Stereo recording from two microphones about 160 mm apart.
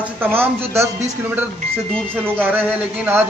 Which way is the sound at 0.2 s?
15° right (ahead or behind).